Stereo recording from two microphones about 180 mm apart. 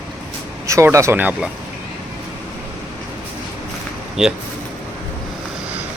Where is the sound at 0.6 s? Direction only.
15° right (ahead or behind).